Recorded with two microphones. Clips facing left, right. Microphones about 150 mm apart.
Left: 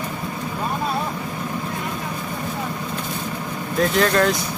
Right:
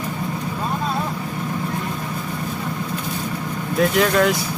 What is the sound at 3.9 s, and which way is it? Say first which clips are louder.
Speech: even; 5° right (ahead or behind).